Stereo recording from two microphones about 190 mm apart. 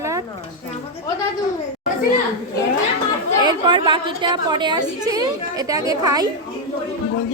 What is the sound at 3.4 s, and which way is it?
A woman's voice, 25° right (ahead or behind).